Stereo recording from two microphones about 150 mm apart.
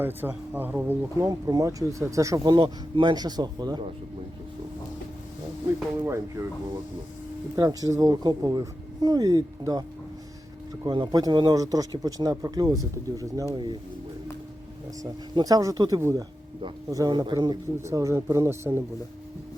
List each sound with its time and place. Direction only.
0.0 s speech: 15° right (ahead or behind)
1.3 s a man's voice: 25° right (ahead or behind)
6.1 s a man's voice: 20° right (ahead or behind)
7.5 s a man's voice: 25° right (ahead or behind)
10.8 s a man's voice: 30° right (ahead or behind)
15.0 s a man's voice: 25° right (ahead or behind)